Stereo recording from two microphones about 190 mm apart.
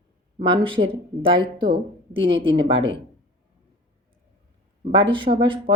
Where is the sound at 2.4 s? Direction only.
30° right (ahead or behind).